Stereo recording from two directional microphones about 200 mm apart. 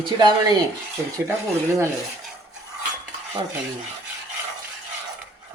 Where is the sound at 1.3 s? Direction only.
15° right (ahead or behind).